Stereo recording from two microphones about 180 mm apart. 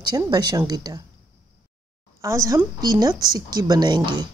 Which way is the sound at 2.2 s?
15° right (ahead or behind).